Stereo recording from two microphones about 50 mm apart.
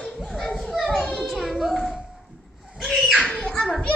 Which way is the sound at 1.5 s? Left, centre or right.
Centre.